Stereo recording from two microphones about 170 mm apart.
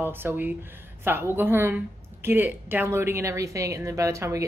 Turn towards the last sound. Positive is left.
turn(degrees=-15)  # may be behind; listen again after turning